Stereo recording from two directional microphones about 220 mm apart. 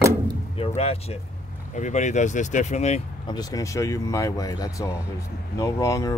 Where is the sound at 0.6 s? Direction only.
25° left (ahead or behind).